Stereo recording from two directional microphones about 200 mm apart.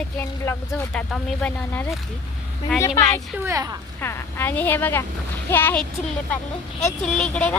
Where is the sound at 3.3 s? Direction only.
15° right (ahead or behind).